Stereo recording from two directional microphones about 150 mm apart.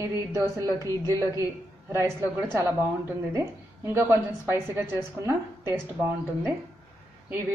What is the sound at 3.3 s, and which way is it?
A woman's voice, 15° right (ahead or behind).